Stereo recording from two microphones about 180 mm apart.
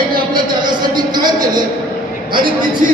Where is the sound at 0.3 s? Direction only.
25° right (ahead or behind).